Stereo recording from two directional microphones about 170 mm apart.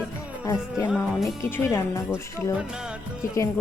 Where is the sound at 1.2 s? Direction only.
15° left (ahead or behind).